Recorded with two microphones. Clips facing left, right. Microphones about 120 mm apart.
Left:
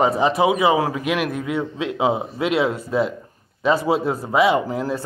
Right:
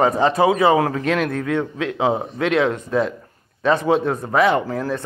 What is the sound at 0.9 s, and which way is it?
A man's voice, 10° left (ahead or behind).